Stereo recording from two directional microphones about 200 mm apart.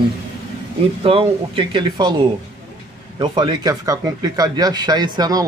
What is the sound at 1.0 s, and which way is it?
A man's voice, 25° right (ahead or behind).